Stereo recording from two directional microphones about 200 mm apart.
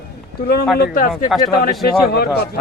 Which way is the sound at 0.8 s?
45° left (ahead or behind).